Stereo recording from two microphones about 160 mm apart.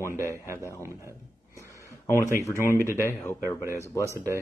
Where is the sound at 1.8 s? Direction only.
20° left (ahead or behind).